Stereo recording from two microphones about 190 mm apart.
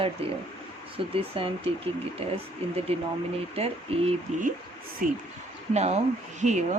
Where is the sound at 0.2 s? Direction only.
30° right (ahead or behind).